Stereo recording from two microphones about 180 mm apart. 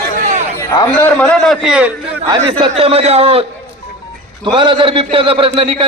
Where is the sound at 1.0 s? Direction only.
5° left (ahead or behind).